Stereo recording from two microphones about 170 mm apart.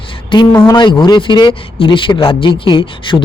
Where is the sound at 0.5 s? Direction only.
20° left (ahead or behind).